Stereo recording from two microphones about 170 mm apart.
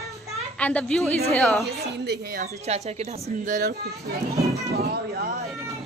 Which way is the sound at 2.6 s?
40° right (ahead or behind).